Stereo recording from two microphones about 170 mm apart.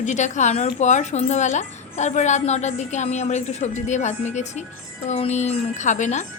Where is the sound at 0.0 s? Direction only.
45° left (ahead or behind).